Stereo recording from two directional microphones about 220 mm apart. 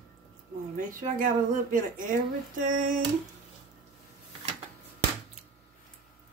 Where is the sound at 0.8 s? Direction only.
40° right (ahead or behind).